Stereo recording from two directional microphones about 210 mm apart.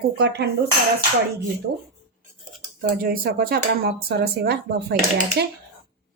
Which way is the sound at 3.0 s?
45° right (ahead or behind).